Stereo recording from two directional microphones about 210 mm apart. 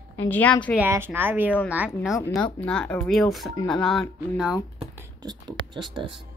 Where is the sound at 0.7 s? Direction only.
10° right (ahead or behind).